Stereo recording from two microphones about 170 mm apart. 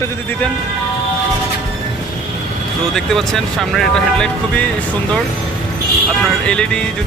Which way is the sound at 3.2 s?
Centre (ahead or behind).